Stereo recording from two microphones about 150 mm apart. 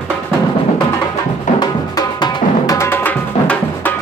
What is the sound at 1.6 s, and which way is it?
Drum, 30° left (ahead or behind).